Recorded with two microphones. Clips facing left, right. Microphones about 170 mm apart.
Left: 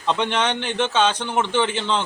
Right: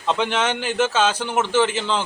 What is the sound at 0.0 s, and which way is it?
A man's voice, centre (ahead or behind).